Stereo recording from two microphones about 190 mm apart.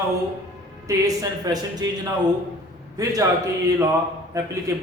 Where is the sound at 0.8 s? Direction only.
20° right (ahead or behind).